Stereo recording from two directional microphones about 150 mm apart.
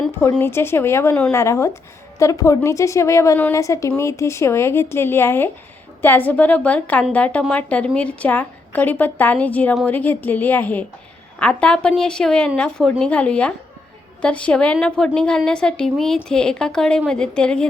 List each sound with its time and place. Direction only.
0.3 s a woman's voice: 15° left (ahead or behind)